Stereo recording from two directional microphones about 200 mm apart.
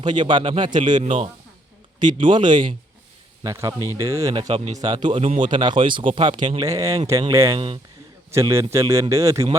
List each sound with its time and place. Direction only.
0.0 s a man's voice: 25° right (ahead or behind)